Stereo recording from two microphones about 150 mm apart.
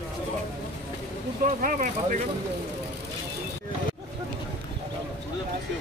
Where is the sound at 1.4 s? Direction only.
60° right (ahead or behind).